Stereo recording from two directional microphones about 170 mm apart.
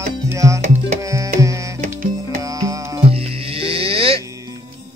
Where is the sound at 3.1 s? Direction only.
35° right (ahead or behind).